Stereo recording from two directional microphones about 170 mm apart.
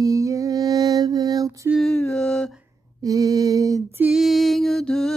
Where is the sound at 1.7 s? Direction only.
Centre (ahead or behind).